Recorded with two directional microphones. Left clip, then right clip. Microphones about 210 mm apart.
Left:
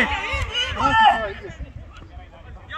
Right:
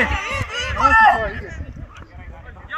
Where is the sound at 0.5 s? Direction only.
5° left (ahead or behind).